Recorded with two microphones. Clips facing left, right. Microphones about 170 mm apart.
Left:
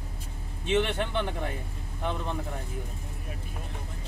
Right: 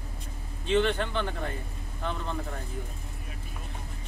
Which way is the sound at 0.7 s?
20° left (ahead or behind).